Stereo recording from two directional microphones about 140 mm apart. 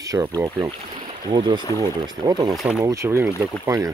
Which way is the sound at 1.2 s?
35° right (ahead or behind).